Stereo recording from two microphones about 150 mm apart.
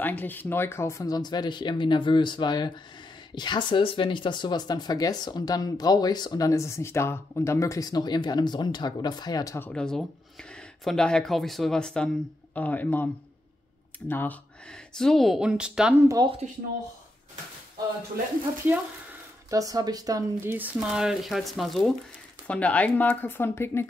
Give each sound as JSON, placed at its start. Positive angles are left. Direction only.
{"t": 0.0, "sound": "speech", "side_deg": 10}
{"t": 9.7, "sound": "speech", "side_deg": 5}
{"t": 15.0, "sound": "speech", "side_deg": 0}
{"t": 16.4, "sound": "speech", "side_deg": -50}
{"t": 19.5, "sound": "speech", "side_deg": -25}
{"t": 20.5, "sound": "speech", "side_deg": -10}